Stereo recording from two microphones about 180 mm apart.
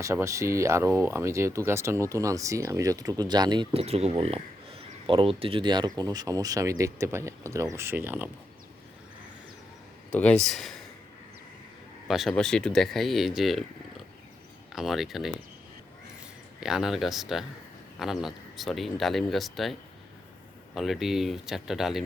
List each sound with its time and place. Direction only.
0.0 s speech: 15° right (ahead or behind)
10.1 s speech: 5° left (ahead or behind)
12.0 s speech: centre (ahead or behind)
16.6 s speech: 5° right (ahead or behind)
20.7 s speech: centre (ahead or behind)